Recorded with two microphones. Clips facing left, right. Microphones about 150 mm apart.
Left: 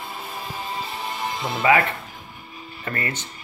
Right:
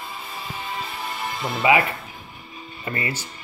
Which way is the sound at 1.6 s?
15° right (ahead or behind).